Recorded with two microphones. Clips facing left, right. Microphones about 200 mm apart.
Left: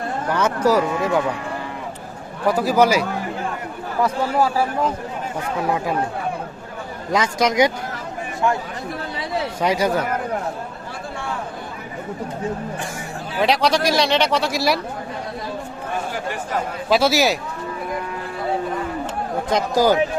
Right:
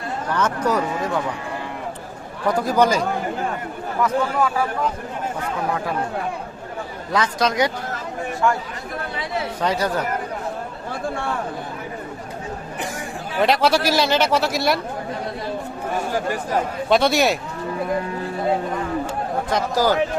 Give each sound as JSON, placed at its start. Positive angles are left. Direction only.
{"t": 0.3, "sound": "speech", "side_deg": 10}
{"t": 2.5, "sound": "a man's voice", "side_deg": 5}
{"t": 4.0, "sound": "speech", "side_deg": 30}
{"t": 7.1, "sound": "speech", "side_deg": 15}
{"t": 9.6, "sound": "speech", "side_deg": 10}
{"t": 13.4, "sound": "a man's voice", "side_deg": 0}
{"t": 16.9, "sound": "a man's voice", "side_deg": 5}
{"t": 19.5, "sound": "speech", "side_deg": 15}